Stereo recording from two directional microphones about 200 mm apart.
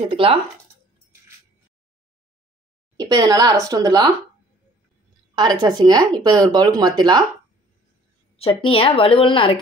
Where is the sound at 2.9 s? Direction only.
20° right (ahead or behind).